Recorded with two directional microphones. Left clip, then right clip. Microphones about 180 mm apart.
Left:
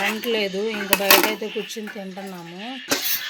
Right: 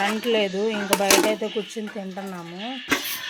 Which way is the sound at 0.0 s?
5° right (ahead or behind).